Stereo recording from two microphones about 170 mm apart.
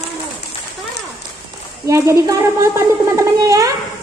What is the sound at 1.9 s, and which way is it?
A child's voice, 15° right (ahead or behind).